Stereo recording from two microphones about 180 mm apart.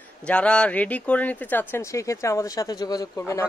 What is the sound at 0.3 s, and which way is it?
Speech, 5° left (ahead or behind).